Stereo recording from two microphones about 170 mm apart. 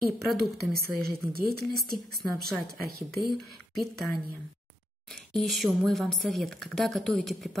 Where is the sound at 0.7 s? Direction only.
65° right (ahead or behind).